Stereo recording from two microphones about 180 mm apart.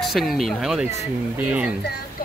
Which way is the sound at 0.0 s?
Centre (ahead or behind).